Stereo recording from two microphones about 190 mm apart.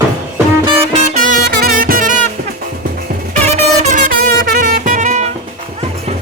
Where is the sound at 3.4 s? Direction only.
40° right (ahead or behind).